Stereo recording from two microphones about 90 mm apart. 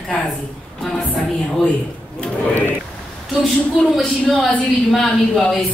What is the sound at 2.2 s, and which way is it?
Speech, 20° left (ahead or behind).